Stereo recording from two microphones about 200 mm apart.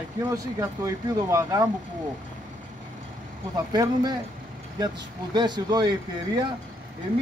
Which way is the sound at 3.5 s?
20° right (ahead or behind).